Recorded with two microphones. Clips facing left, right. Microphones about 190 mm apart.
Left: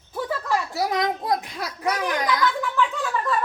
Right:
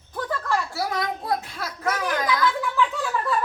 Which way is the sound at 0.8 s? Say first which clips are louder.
Left 3 dB; 20° left (ahead or behind).